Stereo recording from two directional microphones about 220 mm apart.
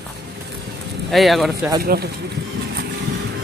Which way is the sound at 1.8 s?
45° right (ahead or behind).